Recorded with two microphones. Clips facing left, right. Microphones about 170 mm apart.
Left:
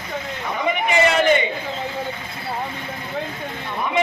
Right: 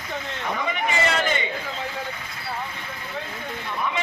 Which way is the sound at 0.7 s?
20° left (ahead or behind).